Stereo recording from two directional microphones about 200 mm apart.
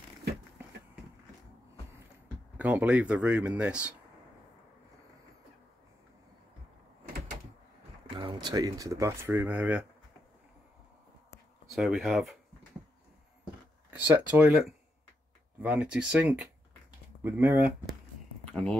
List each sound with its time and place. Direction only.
2.5 s speech: 10° right (ahead or behind)
8.1 s speech: 25° right (ahead or behind); by 9.8 s 5° right (ahead or behind)
11.7 s speech: centre (ahead or behind)
13.8 s speech: 10° right (ahead or behind)
18.5 s a sound: 5° left (ahead or behind)